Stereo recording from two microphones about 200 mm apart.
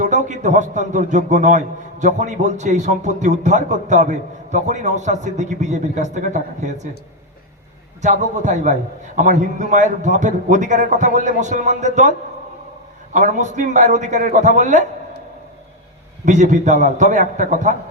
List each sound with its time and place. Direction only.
0.0 s a man's voice: 40° right (ahead or behind)
8.0 s a man's voice: 35° right (ahead or behind)
13.1 s a man's voice: 40° right (ahead or behind)
16.2 s a man's voice: 35° right (ahead or behind)